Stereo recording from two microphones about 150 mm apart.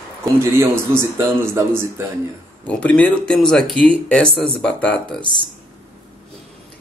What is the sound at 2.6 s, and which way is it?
Speech, 10° left (ahead or behind).